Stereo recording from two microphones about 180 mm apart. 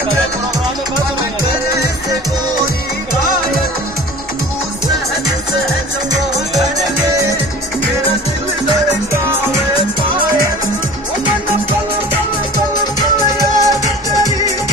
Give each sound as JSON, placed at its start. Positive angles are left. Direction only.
{"t": 13.6, "sound": "music", "side_deg": -20}